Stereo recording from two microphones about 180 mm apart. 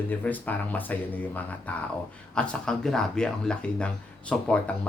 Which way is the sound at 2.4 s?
5° left (ahead or behind).